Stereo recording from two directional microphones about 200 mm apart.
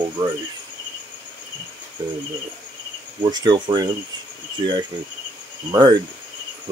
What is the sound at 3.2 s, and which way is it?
Speech, 20° right (ahead or behind).